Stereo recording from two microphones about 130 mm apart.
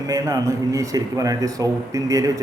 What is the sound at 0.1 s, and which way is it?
Speech, 25° right (ahead or behind).